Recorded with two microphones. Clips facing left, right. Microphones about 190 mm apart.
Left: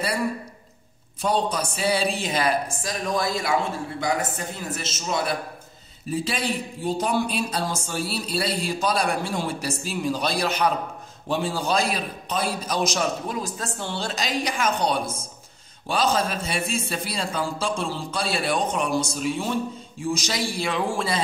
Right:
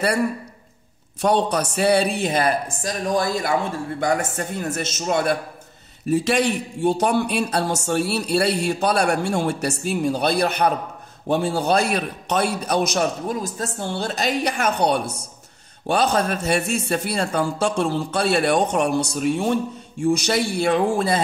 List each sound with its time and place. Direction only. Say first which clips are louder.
1.2 s a man's voice: right 4 dB; 65° right (ahead or behind)
6.0 s a man's voice: right 7 dB; 70° right (ahead or behind); by 20.8 s 55° right (ahead or behind)